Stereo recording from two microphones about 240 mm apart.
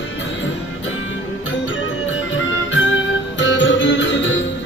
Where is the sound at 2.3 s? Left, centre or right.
Left.